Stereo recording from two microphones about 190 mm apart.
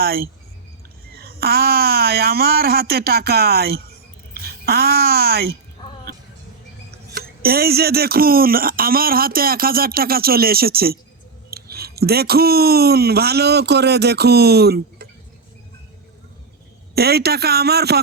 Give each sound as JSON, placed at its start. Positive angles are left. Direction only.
{"t": 0.0, "sound": "speech", "side_deg": -50}
{"t": 7.1, "sound": "speech", "side_deg": -55}
{"t": 16.9, "sound": "speech", "side_deg": -55}